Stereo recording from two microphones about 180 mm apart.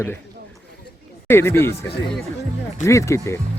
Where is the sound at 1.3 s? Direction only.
15° left (ahead or behind).